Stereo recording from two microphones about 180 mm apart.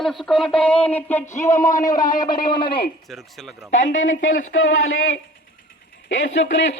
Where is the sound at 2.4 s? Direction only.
25° left (ahead or behind).